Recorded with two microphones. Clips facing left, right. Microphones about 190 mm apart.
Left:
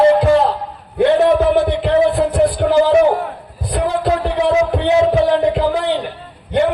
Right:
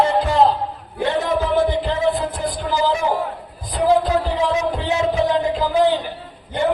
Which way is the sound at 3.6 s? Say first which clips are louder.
Right 1 dB; 65° left (ahead or behind).